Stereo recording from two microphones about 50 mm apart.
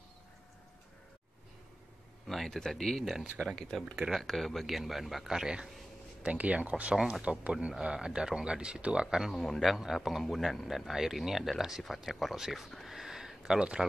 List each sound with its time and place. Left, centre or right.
2.2 s a man's voice: centre
6.2 s speech: right
9.3 s a man's voice: centre